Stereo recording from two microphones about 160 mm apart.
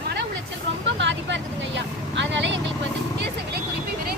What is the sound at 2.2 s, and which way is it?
Vehicle, 90° right.